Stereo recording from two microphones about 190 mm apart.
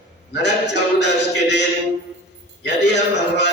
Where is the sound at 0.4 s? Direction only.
65° left (ahead or behind).